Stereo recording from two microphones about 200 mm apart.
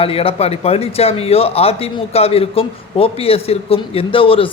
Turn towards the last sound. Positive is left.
turn(degrees=25)  # may be behind; listen again after turning